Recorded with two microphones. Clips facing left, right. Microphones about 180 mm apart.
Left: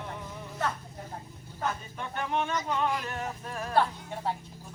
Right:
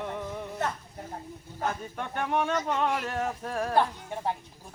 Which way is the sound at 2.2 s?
65° right (ahead or behind).